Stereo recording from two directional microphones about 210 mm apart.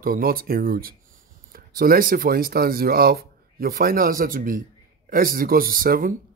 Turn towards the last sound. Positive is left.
turn(degrees=-45)  # may be behind; listen again after turning